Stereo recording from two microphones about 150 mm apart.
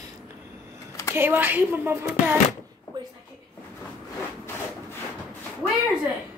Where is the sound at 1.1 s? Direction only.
15° right (ahead or behind).